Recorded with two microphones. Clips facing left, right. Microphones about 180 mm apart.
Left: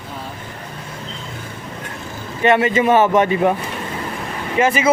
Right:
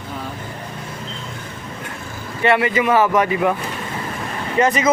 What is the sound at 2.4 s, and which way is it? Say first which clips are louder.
A man's voice: left 2 dB; 20° left (ahead or behind).